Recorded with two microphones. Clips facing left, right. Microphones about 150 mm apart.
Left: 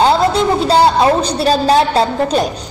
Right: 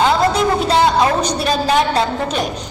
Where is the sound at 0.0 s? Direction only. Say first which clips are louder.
Left 2 dB; 30° left (ahead or behind).